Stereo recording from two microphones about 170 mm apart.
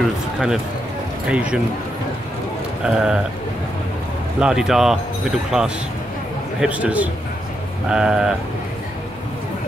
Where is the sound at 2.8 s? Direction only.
5° right (ahead or behind).